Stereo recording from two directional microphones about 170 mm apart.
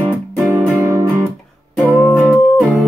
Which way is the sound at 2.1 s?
10° left (ahead or behind).